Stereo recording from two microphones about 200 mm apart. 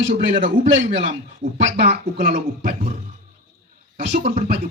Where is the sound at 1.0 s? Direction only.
40° right (ahead or behind).